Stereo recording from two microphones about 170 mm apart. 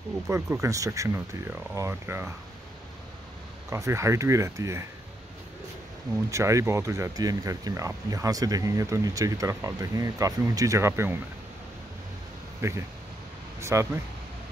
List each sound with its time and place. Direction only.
0.3 s speech: 15° right (ahead or behind)
3.7 s speech: 15° right (ahead or behind)
6.3 s speech: 15° right (ahead or behind)
12.6 s speech: 15° right (ahead or behind)